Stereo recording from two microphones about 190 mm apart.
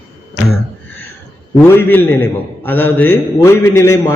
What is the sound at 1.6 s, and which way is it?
A man's voice, 10° left (ahead or behind).